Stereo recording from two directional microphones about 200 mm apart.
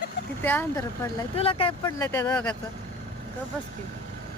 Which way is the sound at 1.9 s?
15° left (ahead or behind).